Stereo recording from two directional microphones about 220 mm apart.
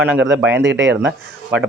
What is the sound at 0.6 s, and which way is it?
Speech, 55° right (ahead or behind).